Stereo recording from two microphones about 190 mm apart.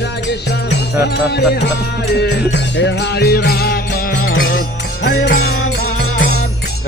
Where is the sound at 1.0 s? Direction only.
60° left (ahead or behind).